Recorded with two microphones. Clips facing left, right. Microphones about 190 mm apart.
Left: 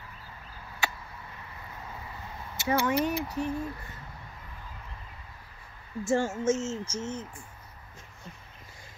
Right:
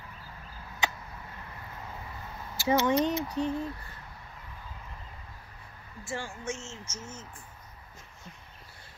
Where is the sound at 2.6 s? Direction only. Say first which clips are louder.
Right 2 dB; 20° right (ahead or behind).